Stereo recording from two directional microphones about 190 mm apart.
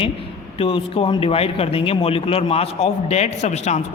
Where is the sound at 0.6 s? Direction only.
30° left (ahead or behind).